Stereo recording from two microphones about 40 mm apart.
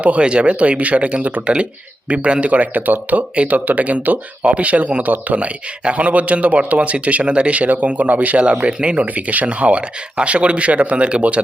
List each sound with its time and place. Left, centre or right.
0.0 s a man's voice: right
9.0 s a man's voice: right